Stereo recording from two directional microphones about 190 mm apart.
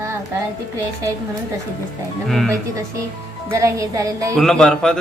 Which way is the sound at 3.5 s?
15° right (ahead or behind).